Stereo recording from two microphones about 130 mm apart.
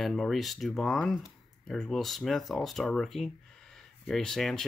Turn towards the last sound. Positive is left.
turn(degrees=5)  # may be behind; listen again after turning